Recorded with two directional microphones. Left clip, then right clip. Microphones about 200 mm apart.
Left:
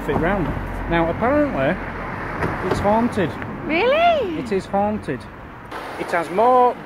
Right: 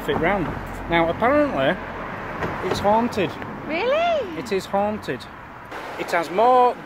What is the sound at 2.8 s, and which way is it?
Speech, 5° right (ahead or behind).